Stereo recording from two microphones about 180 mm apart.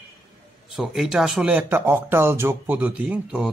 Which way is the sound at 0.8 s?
5° right (ahead or behind).